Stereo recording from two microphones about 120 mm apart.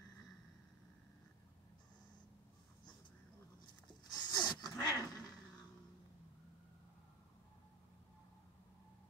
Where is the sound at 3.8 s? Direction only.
35° left (ahead or behind).